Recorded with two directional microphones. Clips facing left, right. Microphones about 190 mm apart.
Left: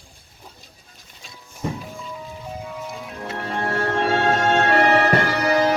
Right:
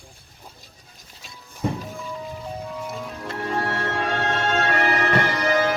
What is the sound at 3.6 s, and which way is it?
Music, 35° left (ahead or behind).